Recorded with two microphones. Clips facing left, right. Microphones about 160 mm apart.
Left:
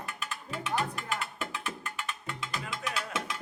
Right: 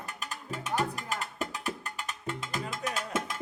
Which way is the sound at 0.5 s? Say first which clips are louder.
Right 1 dB; 40° right (ahead or behind).